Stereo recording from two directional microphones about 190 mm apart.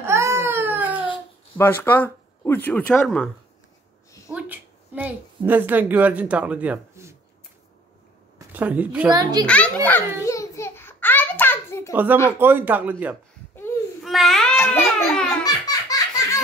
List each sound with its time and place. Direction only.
0.0 s baby cry: 15° right (ahead or behind)
1.6 s speech: 10° left (ahead or behind)
4.3 s a woman's voice: 10° right (ahead or behind)
8.5 s speech: 10° right (ahead or behind)
9.1 s a child's voice: 20° right (ahead or behind)
9.5 s a sound: 10° left (ahead or behind)
11.9 s speech: 10° right (ahead or behind)
14.0 s babbling: centre (ahead or behind)
15.4 s laughter: 20° left (ahead or behind)